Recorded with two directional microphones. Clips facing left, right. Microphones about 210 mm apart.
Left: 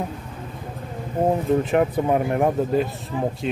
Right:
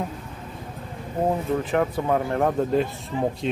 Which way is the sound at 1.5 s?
20° left (ahead or behind).